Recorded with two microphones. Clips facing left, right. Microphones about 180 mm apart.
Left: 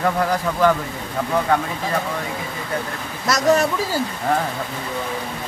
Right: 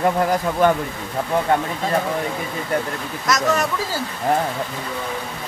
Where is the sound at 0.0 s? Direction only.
20° right (ahead or behind).